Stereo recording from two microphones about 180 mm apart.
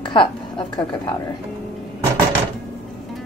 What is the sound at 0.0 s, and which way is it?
A woman's voice, 25° left (ahead or behind).